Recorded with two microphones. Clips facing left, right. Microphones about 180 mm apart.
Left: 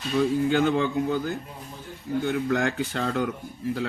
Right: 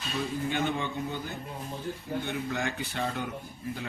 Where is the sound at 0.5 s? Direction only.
90° left.